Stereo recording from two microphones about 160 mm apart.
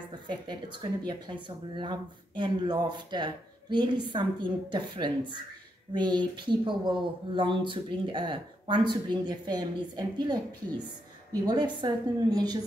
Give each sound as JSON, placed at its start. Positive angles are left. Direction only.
{"t": 0.3, "sound": "speech", "side_deg": -25}
{"t": 11.4, "sound": "speech", "side_deg": -25}